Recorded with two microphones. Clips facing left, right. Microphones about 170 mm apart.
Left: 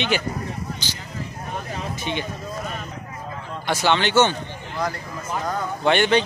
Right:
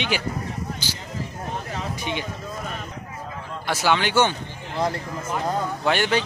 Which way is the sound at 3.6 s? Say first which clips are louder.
Left 1 dB; 5° right (ahead or behind).